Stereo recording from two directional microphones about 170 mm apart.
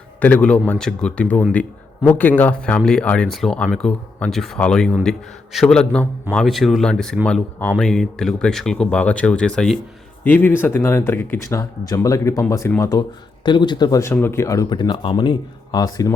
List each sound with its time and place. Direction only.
0.2 s speech: 10° left (ahead or behind)